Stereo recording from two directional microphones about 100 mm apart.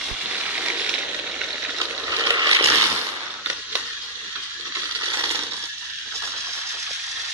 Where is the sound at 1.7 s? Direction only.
35° right (ahead or behind).